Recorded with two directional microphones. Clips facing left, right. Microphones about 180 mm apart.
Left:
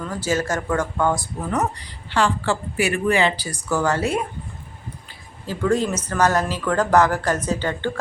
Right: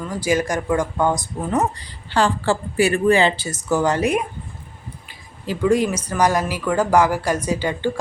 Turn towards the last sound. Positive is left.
turn(degrees=-10)  # may be behind; listen again after turning